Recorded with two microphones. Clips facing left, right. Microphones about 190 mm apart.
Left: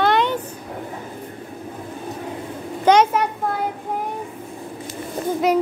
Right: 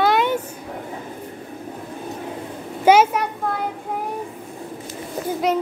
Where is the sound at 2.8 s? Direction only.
5° right (ahead or behind).